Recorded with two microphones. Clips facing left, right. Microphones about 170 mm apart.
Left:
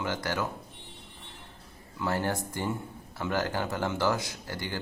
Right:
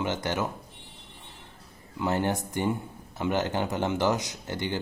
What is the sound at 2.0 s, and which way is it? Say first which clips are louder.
Speech: right 3 dB; 20° right (ahead or behind).